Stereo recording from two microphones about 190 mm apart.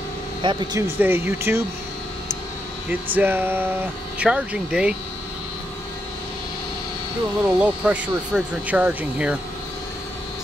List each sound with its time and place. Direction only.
0.4 s speech: 25° right (ahead or behind)
0.8 s speech: 10° right (ahead or behind)
3.2 s speech: 10° right (ahead or behind)
7.4 s speech: 5° right (ahead or behind)